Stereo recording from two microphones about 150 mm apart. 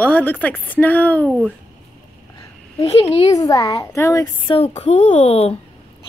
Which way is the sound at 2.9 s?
45° left (ahead or behind).